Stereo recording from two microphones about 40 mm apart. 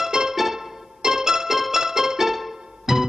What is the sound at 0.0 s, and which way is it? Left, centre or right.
Music, centre.